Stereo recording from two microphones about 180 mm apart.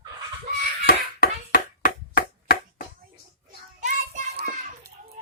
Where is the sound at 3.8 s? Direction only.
40° right (ahead or behind).